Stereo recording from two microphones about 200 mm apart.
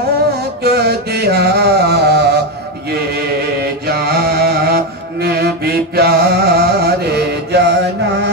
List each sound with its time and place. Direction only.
0.7 s a sound: 55° right (ahead or behind)
3.8 s music: 50° right (ahead or behind)
5.9 s mantra: 50° right (ahead or behind)